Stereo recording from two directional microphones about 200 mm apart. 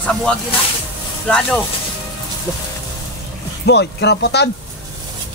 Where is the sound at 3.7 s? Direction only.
55° left (ahead or behind).